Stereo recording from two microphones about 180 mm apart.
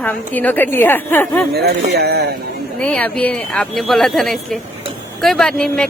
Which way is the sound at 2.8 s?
10° left (ahead or behind).